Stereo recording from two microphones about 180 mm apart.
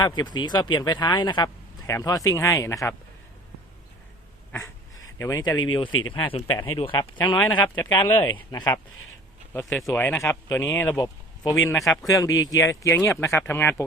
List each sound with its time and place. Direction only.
0.0 s speech: 25° left (ahead or behind)
4.5 s a sound: 15° left (ahead or behind)
6.1 s speech: 30° left (ahead or behind); by 13.8 s 10° left (ahead or behind)